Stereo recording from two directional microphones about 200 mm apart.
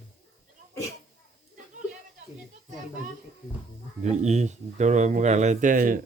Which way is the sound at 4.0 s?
35° right (ahead or behind).